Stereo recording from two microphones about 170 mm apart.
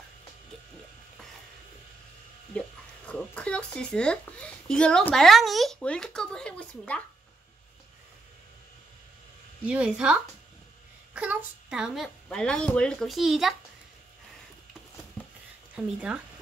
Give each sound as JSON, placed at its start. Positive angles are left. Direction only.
{"t": 3.1, "sound": "a woman's voice", "side_deg": 5}
{"t": 9.7, "sound": "a child's voice", "side_deg": -5}
{"t": 11.1, "sound": "a child's voice", "side_deg": -5}
{"t": 15.7, "sound": "speech", "side_deg": -5}